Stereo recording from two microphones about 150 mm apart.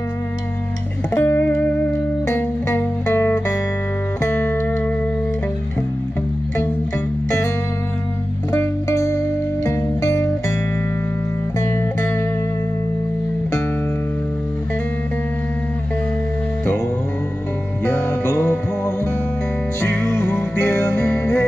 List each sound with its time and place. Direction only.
1.1 s music: 15° left (ahead or behind)
8.5 s music: 15° left (ahead or behind)
17.8 s music: 10° left (ahead or behind)
19.9 s music: 10° left (ahead or behind)